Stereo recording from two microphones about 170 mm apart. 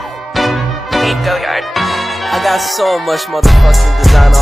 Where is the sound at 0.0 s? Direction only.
Centre (ahead or behind).